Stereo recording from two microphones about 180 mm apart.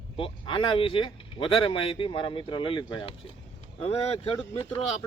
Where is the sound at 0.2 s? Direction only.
30° left (ahead or behind).